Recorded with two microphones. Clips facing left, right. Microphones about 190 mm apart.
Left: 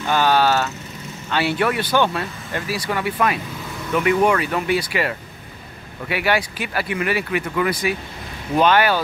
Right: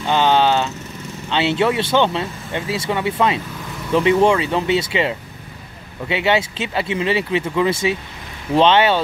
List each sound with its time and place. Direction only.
0.0 s vehicle: 20° right (ahead or behind)
1.3 s speech: 20° right (ahead or behind)